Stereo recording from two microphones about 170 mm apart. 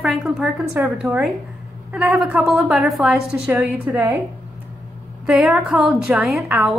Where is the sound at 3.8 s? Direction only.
20° right (ahead or behind).